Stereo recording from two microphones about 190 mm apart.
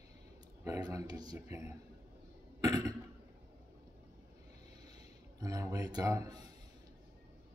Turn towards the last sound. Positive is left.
turn(degrees=-20)  # may be behind; listen again after turning